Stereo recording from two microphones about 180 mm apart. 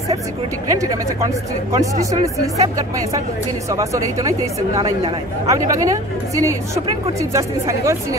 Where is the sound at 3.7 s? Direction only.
15° right (ahead or behind).